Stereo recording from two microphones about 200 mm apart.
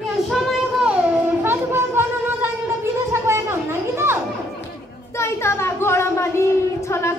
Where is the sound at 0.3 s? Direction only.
5° right (ahead or behind).